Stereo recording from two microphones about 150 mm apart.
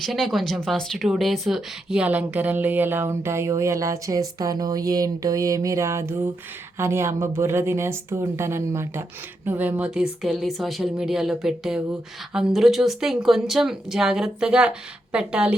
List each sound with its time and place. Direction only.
0.0 s speech: centre (ahead or behind)